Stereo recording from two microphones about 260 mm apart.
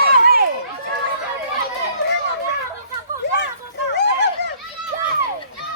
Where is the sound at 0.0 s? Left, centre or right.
Right.